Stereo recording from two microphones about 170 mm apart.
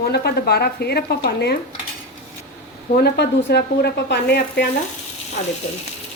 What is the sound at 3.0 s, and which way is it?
Speech, 75° left (ahead or behind).